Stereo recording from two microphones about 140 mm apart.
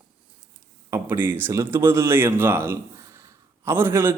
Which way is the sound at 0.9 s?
15° right (ahead or behind).